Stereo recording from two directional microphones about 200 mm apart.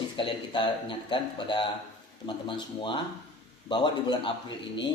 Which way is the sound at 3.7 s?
25° left (ahead or behind).